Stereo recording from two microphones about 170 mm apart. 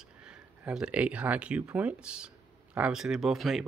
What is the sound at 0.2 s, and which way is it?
Speech, 5° right (ahead or behind).